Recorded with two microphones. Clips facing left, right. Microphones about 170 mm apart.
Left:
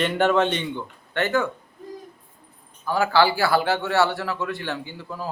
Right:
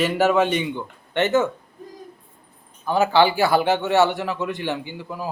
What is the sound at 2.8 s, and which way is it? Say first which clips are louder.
A man's voice: right 2 dB; 20° right (ahead or behind).